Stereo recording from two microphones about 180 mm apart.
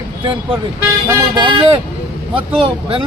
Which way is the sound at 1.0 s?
20° right (ahead or behind).